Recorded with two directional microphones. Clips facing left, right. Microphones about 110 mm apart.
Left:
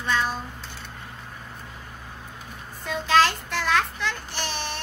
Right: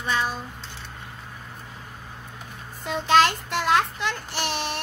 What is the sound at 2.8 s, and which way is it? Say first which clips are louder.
A child's voice: right 1 dB; 20° right (ahead or behind).